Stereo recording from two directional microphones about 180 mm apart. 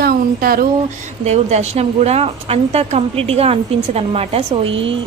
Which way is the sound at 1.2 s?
40° right (ahead or behind).